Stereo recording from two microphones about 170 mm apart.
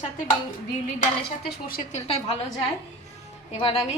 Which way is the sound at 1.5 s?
60° left (ahead or behind).